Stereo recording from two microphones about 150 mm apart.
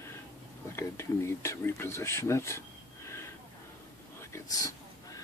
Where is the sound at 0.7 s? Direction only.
20° left (ahead or behind).